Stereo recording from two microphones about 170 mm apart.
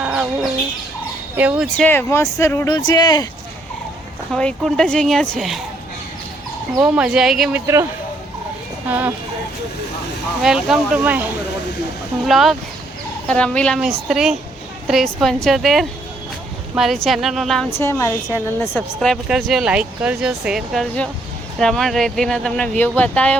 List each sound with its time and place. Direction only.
0.0 s chicken: 5° right (ahead or behind)
1.4 s speech: 10° right (ahead or behind)
1.6 s a woman's voice: 5° left (ahead or behind); by 3.2 s 25° left (ahead or behind)
4.3 s speech: 5° left (ahead or behind)
6.7 s speech: 5° right (ahead or behind)
8.9 s speech: 10° right (ahead or behind)
10.4 s speech: 5° right (ahead or behind)
17.7 s a woman's voice: 15° left (ahead or behind)
18.8 s speech: centre (ahead or behind)